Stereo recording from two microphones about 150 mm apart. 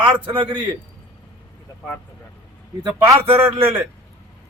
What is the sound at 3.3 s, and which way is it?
Speech, 15° right (ahead or behind).